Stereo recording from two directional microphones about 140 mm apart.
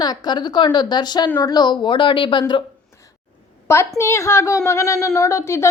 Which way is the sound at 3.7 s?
20° left (ahead or behind).